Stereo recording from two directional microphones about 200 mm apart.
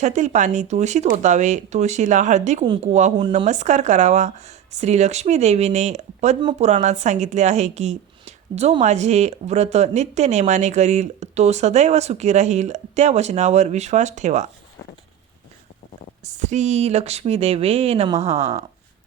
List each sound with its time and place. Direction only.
0.0 s a woman's voice: 35° right (ahead or behind)
16.2 s a woman's voice: 35° right (ahead or behind)